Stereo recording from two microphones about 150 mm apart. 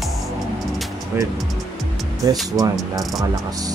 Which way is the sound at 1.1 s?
15° right (ahead or behind).